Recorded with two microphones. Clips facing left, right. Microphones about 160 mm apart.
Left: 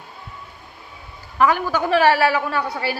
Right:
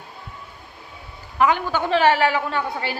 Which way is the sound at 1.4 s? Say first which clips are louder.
Left 1 dB; 20° right (ahead or behind).